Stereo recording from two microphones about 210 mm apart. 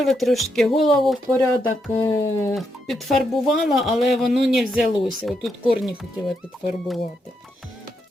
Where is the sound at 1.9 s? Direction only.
25° left (ahead or behind).